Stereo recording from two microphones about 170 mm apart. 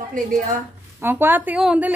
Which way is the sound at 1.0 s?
10° right (ahead or behind).